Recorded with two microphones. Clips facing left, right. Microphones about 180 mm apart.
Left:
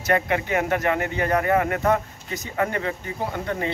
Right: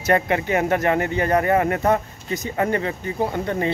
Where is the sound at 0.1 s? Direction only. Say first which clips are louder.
Right 3 dB; 30° right (ahead or behind).